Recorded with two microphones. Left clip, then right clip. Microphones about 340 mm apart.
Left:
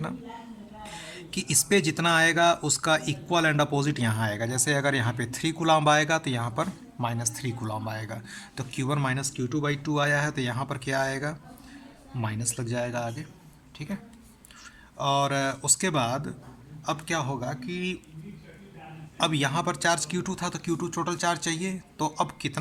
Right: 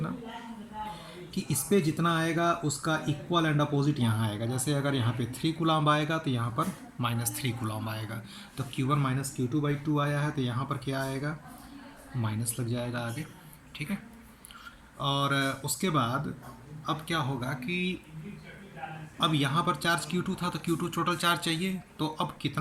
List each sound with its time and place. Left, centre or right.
1.3 s speech: left
12.5 s a woman's voice: left
19.2 s speech: left